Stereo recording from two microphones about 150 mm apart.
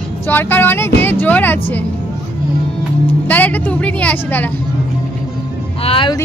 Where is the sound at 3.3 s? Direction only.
10° left (ahead or behind).